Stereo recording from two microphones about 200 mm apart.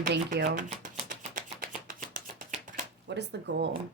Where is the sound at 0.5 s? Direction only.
40° right (ahead or behind).